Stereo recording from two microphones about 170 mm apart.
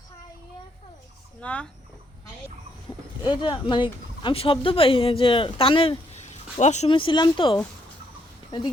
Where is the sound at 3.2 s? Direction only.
25° left (ahead or behind).